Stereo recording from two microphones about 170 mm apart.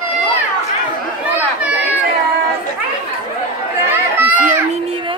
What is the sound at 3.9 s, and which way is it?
Run, 10° right (ahead or behind).